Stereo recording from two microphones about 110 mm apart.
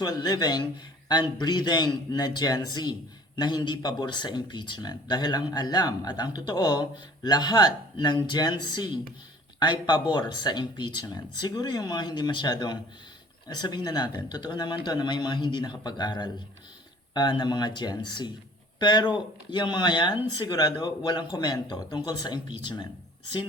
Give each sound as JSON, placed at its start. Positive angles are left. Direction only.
{"t": 0.0, "sound": "speech", "side_deg": 35}